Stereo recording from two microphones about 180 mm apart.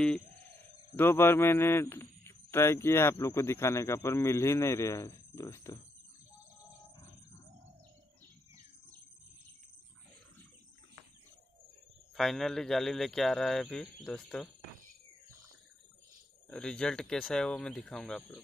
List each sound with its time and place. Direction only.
0.9 s a man's voice: 15° left (ahead or behind)
12.2 s speech: centre (ahead or behind)
16.4 s speech: 5° left (ahead or behind)